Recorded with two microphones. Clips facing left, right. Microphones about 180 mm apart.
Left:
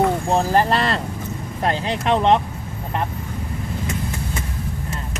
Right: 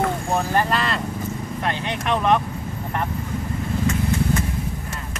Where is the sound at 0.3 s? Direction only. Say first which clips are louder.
Left 4 dB; 30° left (ahead or behind).